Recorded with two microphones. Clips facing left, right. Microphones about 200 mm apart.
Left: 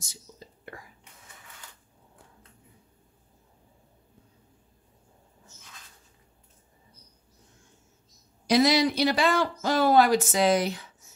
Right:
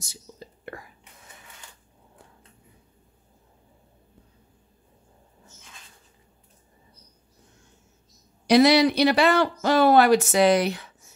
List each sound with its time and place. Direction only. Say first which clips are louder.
0.7 s whispering: right 5 dB; 70° right (ahead or behind)
8.5 s speech: right 5 dB; 65° right (ahead or behind)